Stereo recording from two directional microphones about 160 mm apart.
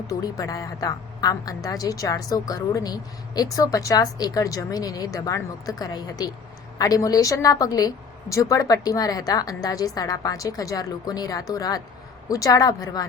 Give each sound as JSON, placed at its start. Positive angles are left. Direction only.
{"t": 0.1, "sound": "a woman's voice", "side_deg": 20}